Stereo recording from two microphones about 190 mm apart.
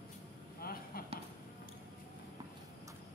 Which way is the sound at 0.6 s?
50° left (ahead or behind).